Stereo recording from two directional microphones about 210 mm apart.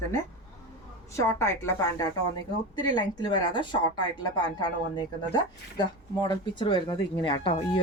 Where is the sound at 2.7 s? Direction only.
20° left (ahead or behind).